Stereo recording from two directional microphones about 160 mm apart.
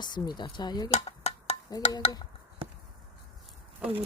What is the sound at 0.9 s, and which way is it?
Dishes, 40° left (ahead or behind).